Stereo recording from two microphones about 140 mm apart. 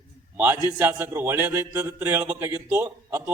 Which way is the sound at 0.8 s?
15° right (ahead or behind).